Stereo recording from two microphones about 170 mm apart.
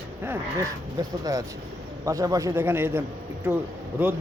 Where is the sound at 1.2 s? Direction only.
20° right (ahead or behind).